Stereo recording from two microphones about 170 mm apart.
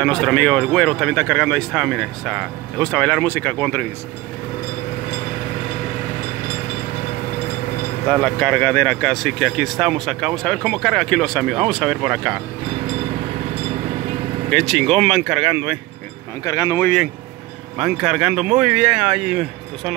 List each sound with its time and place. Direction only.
0.0 s speech: 5° left (ahead or behind)
8.1 s speech: 5° left (ahead or behind)
14.5 s speech: centre (ahead or behind)
16.4 s speech: 20° left (ahead or behind)
17.7 s speech: 5° right (ahead or behind)